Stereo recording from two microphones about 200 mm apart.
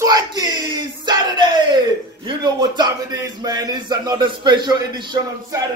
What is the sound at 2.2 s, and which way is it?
A man's voice, 20° right (ahead or behind).